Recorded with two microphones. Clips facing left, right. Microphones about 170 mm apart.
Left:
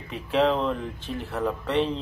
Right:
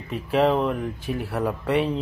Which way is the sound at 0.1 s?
5° right (ahead or behind).